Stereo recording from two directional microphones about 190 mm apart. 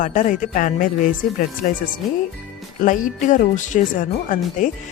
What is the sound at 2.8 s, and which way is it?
Speech, 40° left (ahead or behind).